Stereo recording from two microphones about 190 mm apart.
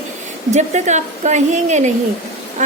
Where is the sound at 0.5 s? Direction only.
40° right (ahead or behind).